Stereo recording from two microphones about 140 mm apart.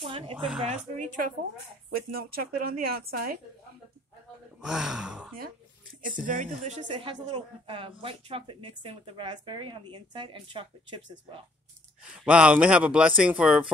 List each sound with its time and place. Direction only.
0.0 s speech: 40° right (ahead or behind)
0.7 s speech: 65° right (ahead or behind)
2.0 s speech: 90° right
4.6 s speech: 5° right (ahead or behind)
6.0 s speech: 70° right (ahead or behind)
6.6 s speech: 55° right (ahead or behind)
6.9 s speech: 35° right (ahead or behind)
12.0 s speech: 10° right (ahead or behind)